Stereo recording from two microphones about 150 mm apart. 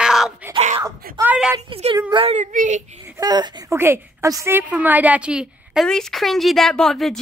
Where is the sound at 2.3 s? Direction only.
55° right (ahead or behind).